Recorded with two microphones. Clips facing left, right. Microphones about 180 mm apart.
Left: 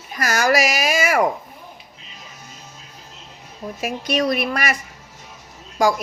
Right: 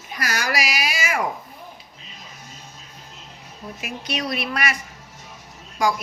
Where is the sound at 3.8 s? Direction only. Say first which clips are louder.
Left 8 dB; 45° left (ahead or behind).